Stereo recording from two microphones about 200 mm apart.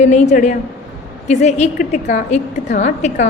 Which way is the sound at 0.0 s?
35° left (ahead or behind).